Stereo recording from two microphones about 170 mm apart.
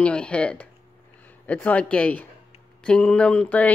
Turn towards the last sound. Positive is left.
turn(degrees=10)  # may be behind; listen again after turning